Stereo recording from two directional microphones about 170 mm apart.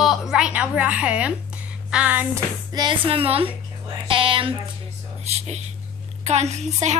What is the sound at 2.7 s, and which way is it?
A woman's voice, 25° right (ahead or behind).